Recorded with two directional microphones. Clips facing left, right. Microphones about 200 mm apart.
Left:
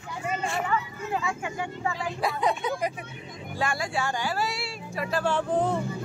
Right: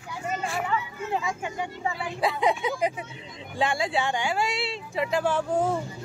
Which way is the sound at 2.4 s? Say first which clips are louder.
Right 2 dB; 20° right (ahead or behind).